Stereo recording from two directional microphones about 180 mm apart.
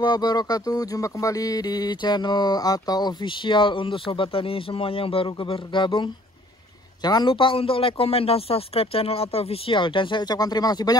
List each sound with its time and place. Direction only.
0.0 s a man's voice: 20° left (ahead or behind)